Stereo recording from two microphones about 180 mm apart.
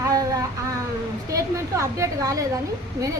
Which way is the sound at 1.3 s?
15° right (ahead or behind).